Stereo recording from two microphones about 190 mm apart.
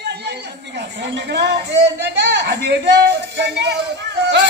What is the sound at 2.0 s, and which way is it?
A man's voice, 65° right (ahead or behind).